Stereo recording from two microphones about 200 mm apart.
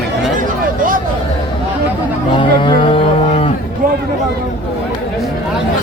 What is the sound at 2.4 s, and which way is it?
Livestock, 25° left (ahead or behind).